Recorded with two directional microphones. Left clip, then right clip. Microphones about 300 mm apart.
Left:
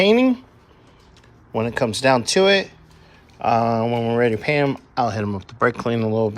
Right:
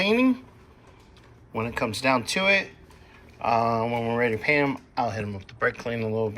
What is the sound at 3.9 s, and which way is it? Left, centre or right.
Speech, left.